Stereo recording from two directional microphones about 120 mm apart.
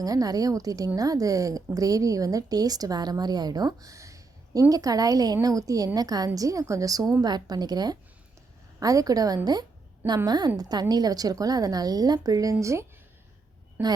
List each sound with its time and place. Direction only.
0.0 s a woman's voice: 30° right (ahead or behind); by 13.9 s 15° right (ahead or behind)